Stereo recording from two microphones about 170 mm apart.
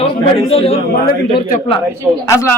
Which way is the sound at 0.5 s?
35° left (ahead or behind).